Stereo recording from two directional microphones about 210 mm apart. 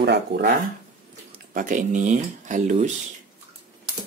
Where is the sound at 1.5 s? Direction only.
40° right (ahead or behind).